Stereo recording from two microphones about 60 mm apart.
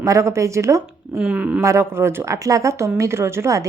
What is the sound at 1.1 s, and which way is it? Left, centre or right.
Speech, centre.